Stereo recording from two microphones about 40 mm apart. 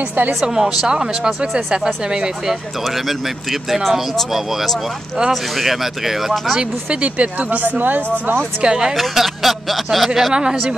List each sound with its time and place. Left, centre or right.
0.4 s speech: centre
0.8 s speech: centre
5.3 s speech: centre
6.9 s speech: right
8.6 s speech: right
8.9 s speech: centre
10.3 s speech: centre